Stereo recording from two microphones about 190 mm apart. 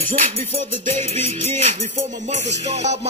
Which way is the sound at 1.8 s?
40° right (ahead or behind).